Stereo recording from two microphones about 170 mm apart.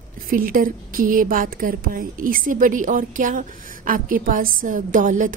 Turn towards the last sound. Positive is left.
turn(degrees=-50)  # may be behind; listen again after turning